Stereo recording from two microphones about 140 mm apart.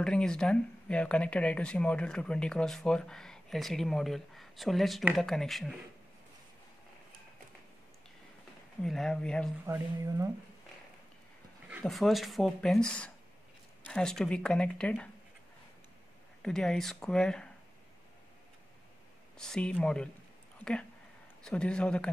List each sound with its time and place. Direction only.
0.0 s speech: 5° left (ahead or behind)
8.8 s speech: centre (ahead or behind)
9.7 s speech: 20° right (ahead or behind)
11.8 s speech: centre (ahead or behind)
16.4 s speech: 5° left (ahead or behind)
19.3 s speech: 5° left (ahead or behind)
21.5 s speech: 5° left (ahead or behind)